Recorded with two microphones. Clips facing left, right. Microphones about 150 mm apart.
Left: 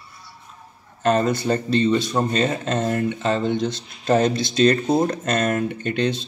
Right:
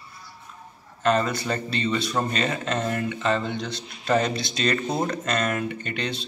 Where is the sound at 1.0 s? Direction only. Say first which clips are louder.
Left 4 dB; 45° left (ahead or behind).